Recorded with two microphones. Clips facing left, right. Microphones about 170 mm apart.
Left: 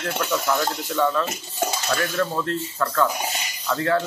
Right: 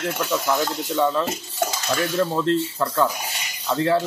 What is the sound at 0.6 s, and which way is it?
Speech, 20° right (ahead or behind).